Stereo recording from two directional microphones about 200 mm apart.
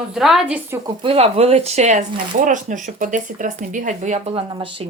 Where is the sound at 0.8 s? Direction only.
25° right (ahead or behind).